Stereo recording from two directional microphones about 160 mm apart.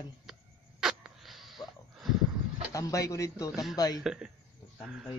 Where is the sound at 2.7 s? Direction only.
20° left (ahead or behind).